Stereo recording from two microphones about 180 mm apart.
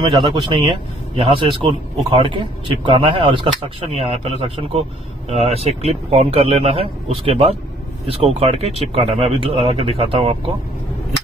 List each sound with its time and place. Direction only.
0.0 s speech: 30° right (ahead or behind)